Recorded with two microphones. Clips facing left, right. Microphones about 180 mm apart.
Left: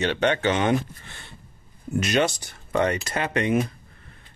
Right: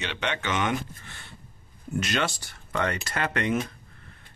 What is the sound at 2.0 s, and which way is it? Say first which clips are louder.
Speech: left 7 dB; 15° left (ahead or behind).